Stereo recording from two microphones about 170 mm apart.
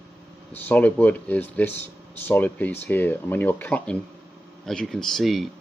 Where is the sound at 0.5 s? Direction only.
10° left (ahead or behind).